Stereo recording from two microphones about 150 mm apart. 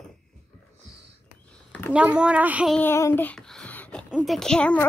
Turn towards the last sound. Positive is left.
turn(degrees=5)  # may be behind; listen again after turning